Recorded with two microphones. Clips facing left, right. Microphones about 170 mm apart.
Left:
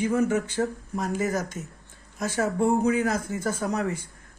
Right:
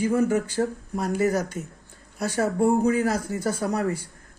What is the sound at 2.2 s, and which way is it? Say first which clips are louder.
Speech: right 2 dB; 45° right (ahead or behind).